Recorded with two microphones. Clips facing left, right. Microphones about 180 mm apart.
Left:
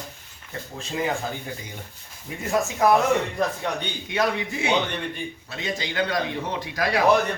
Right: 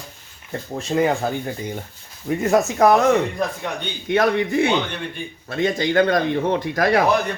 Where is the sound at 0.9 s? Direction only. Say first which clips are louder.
Right 9 dB; 50° right (ahead or behind).